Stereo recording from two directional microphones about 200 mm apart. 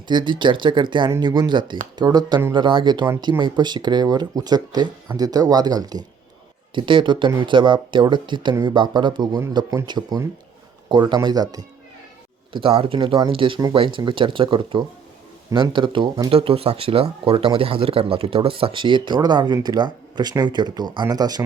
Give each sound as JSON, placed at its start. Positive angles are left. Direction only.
{"t": 0.1, "sound": "speech", "side_deg": -25}